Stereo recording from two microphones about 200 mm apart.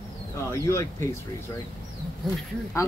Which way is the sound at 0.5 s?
15° left (ahead or behind).